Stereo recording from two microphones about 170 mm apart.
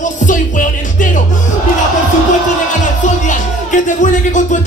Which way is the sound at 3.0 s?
45° left (ahead or behind).